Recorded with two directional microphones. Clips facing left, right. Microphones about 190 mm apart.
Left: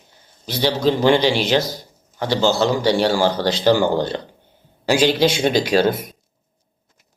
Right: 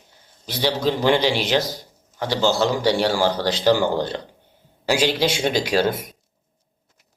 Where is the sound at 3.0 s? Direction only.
15° left (ahead or behind).